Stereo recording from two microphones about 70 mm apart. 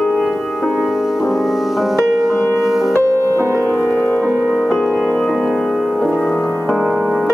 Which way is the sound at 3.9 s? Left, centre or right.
Left.